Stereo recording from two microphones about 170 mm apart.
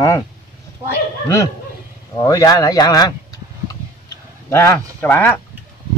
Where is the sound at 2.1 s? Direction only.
20° left (ahead or behind).